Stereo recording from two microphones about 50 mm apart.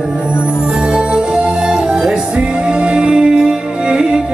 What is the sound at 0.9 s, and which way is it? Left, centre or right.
Music, centre.